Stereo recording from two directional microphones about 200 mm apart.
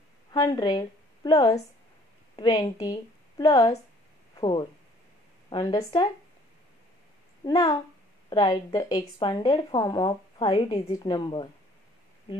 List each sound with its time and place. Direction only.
0.3 s a woman's voice: 20° left (ahead or behind)
7.4 s a woman's voice: 20° left (ahead or behind)